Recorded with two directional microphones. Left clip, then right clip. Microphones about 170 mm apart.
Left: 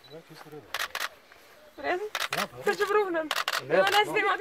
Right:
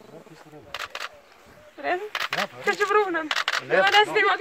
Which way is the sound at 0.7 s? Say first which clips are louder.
Left 1 dB; 65° left (ahead or behind).